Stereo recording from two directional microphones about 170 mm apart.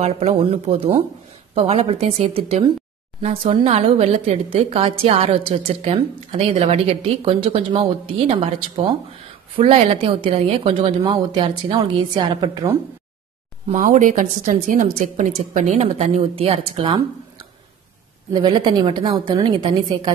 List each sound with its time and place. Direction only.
0.0 s a woman's voice: 40° right (ahead or behind); by 12.7 s 20° right (ahead or behind)
13.7 s a woman's voice: 50° right (ahead or behind)
18.3 s a woman's voice: 30° right (ahead or behind)